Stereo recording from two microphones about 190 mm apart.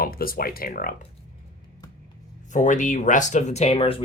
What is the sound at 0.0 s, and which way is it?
Speech, 50° left (ahead or behind).